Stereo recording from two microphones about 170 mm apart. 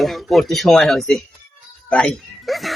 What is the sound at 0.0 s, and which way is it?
Speech, centre (ahead or behind).